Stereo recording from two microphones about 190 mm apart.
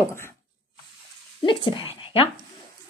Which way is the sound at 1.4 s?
25° left (ahead or behind).